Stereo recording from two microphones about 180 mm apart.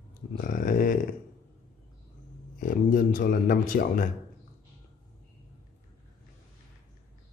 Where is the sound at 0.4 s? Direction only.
50° left (ahead or behind).